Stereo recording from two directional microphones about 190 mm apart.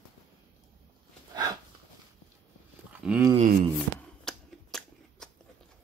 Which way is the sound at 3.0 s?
5° right (ahead or behind).